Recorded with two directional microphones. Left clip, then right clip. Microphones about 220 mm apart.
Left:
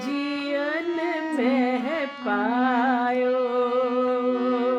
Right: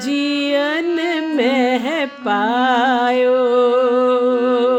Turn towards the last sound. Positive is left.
turn(degrees=-45)  # may be behind; listen again after turning